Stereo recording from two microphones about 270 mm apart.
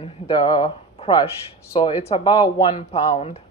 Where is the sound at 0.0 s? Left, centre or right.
Centre.